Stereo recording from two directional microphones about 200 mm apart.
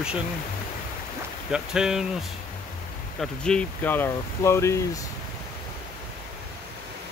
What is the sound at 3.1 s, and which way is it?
Speech, 5° left (ahead or behind).